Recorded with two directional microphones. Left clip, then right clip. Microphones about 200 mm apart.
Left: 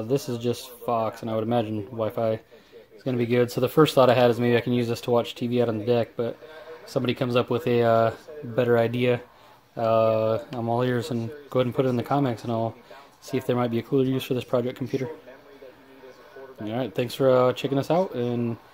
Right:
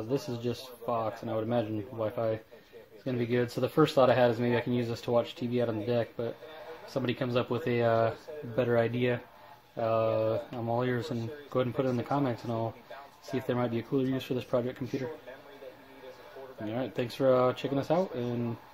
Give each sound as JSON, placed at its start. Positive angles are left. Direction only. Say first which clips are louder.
{"t": 0.1, "sound": "speech", "louder": "left 7 dB", "side_deg": 35}
{"t": 16.6, "sound": "speech", "louder": "left 6 dB", "side_deg": 35}